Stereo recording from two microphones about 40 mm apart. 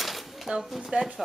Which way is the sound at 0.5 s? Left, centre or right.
Centre.